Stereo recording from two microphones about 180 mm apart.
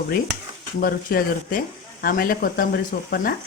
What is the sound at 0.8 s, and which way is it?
Speech, 55° left (ahead or behind).